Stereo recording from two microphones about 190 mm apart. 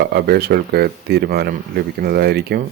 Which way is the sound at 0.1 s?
55° right (ahead or behind).